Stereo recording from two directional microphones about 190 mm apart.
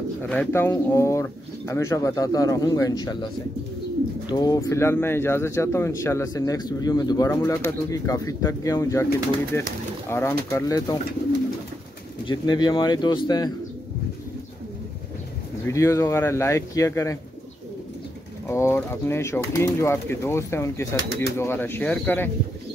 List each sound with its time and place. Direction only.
0.2 s speech: 10° left (ahead or behind)
4.3 s speech: 20° left (ahead or behind)
12.3 s speech: 20° left (ahead or behind)
15.6 s speech: 15° left (ahead or behind)
18.5 s speech: 15° left (ahead or behind)